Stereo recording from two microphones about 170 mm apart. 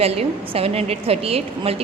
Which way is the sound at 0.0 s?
35° right (ahead or behind).